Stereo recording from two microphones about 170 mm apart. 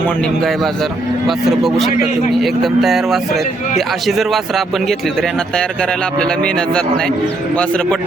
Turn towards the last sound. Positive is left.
turn(degrees=5)  # may be behind; listen again after turning